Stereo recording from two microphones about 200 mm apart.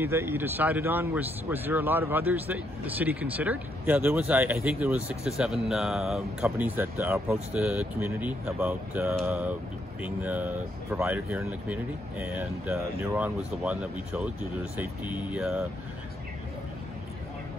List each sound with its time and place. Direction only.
0.0 s speech: 10° right (ahead or behind)
15.3 s speech: 5° right (ahead or behind)